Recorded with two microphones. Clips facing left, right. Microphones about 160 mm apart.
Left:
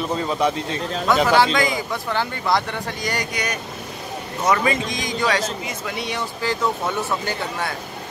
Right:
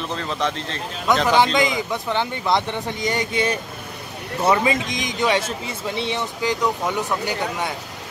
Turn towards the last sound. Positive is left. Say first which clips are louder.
# right 1 dB
turn(degrees=-15)  # may be behind; listen again after turning